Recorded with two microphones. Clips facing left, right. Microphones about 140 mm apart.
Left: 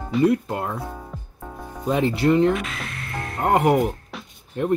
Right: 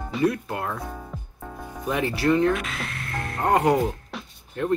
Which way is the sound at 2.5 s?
Centre (ahead or behind).